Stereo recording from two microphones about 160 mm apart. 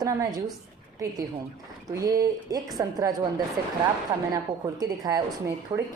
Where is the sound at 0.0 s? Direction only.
25° right (ahead or behind).